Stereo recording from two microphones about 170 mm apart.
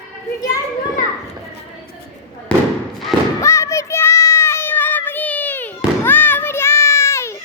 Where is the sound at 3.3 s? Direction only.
15° left (ahead or behind).